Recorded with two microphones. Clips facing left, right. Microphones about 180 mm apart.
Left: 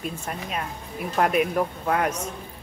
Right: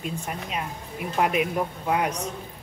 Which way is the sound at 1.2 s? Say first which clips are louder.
Left 2 dB; 15° right (ahead or behind).